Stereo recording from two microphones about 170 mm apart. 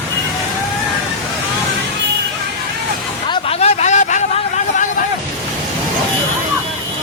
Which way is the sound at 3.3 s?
35° left (ahead or behind).